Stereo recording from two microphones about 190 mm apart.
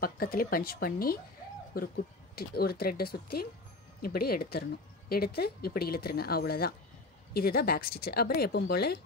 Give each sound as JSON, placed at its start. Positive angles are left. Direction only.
{"t": 0.0, "sound": "speech", "side_deg": 50}